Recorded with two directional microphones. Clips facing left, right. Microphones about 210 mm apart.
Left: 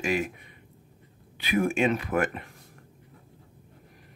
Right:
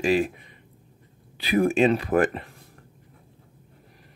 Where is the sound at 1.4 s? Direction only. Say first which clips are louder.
Right 5 dB; 35° right (ahead or behind).